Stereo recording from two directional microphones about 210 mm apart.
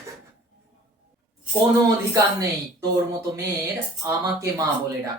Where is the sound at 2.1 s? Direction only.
15° right (ahead or behind).